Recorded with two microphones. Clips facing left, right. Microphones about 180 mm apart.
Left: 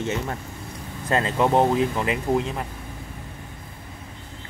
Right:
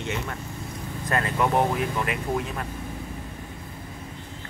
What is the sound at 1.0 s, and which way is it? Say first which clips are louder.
Speech: left 3 dB; 25° left (ahead or behind).